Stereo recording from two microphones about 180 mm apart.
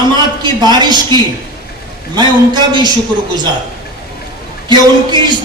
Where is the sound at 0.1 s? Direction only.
25° right (ahead or behind).